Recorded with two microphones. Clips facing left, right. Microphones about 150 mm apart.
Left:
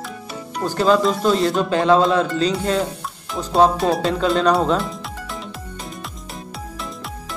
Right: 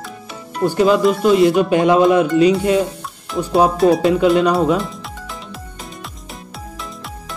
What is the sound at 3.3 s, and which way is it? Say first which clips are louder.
Speech: right 2 dB; 10° right (ahead or behind).